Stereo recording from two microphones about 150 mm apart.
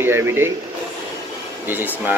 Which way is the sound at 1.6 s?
10° right (ahead or behind).